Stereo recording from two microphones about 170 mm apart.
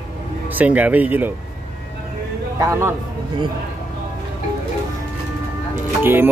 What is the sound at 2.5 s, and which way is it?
Speech, 20° right (ahead or behind).